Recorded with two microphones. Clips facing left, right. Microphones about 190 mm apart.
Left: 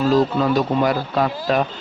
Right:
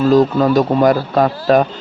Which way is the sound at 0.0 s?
45° right (ahead or behind).